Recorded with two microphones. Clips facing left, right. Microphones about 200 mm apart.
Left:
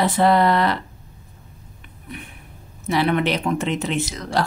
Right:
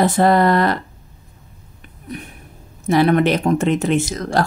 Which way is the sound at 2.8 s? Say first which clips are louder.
Right 5 dB; 45° right (ahead or behind).